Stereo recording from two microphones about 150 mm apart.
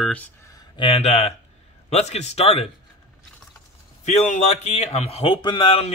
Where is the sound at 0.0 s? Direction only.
10° left (ahead or behind).